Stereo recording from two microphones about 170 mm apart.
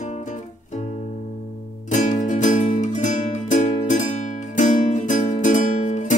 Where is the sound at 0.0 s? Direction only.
45° left (ahead or behind).